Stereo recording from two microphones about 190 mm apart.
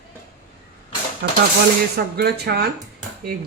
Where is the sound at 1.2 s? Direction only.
55° right (ahead or behind).